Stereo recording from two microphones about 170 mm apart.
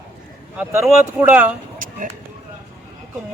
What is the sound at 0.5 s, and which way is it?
A man's voice, 10° right (ahead or behind).